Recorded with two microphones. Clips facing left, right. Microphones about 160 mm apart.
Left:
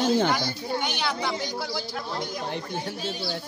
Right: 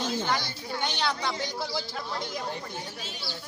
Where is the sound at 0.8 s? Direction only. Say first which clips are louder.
Left 1 dB; 5° left (ahead or behind).